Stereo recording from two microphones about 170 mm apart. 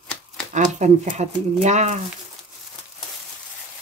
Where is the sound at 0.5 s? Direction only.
45° right (ahead or behind).